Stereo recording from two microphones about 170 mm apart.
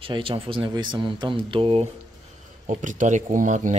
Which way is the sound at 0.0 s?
30° right (ahead or behind).